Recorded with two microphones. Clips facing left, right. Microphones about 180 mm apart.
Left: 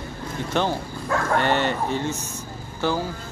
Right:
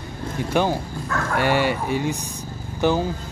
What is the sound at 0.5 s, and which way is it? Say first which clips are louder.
Speech: right 3 dB; 10° right (ahead or behind).